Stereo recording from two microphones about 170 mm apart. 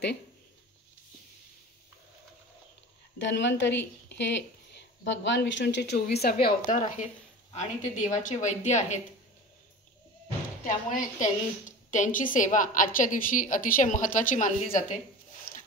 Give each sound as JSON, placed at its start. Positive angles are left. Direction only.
{"t": 3.2, "sound": "a woman's voice", "side_deg": 90}
{"t": 6.4, "sound": "a woman's voice", "side_deg": 50}
{"t": 10.6, "sound": "a woman's voice", "side_deg": 50}